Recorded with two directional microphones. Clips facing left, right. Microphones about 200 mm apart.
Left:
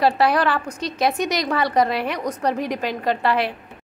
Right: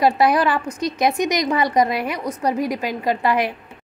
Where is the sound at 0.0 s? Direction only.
10° right (ahead or behind).